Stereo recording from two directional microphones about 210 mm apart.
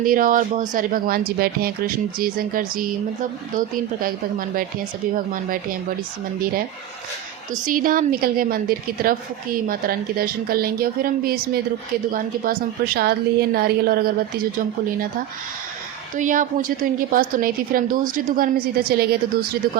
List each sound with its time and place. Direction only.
0.0 s a woman's voice: 40° right (ahead or behind)
4.0 s a woman's voice: 40° right (ahead or behind)
7.6 s a woman's voice: 40° right (ahead or behind)
16.1 s a woman's voice: 40° right (ahead or behind)